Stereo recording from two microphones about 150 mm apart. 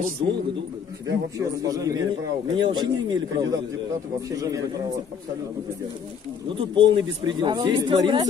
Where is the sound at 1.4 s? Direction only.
20° right (ahead or behind).